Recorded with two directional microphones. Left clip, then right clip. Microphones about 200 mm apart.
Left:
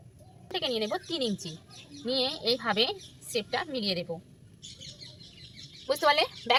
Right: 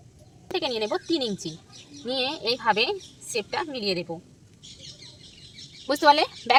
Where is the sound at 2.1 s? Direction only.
45° right (ahead or behind).